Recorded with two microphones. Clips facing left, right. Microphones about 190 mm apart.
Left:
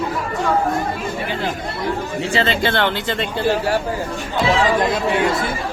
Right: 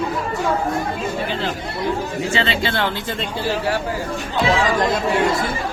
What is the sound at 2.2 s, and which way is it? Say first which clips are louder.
Speech: left 2 dB; 35° left (ahead or behind).